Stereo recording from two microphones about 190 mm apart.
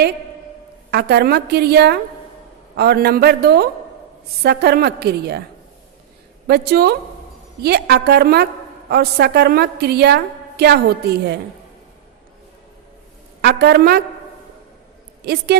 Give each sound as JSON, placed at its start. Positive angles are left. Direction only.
{"t": 0.9, "sound": "a woman's voice", "side_deg": -55}
{"t": 6.5, "sound": "a woman's voice", "side_deg": -60}
{"t": 13.4, "sound": "a woman's voice", "side_deg": -60}
{"t": 15.2, "sound": "a woman's voice", "side_deg": -55}